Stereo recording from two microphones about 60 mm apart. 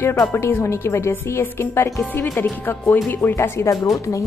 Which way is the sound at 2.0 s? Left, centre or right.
Left.